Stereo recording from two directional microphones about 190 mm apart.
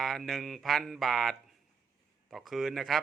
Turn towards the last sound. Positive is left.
turn(degrees=0)  # may be behind; listen again after turning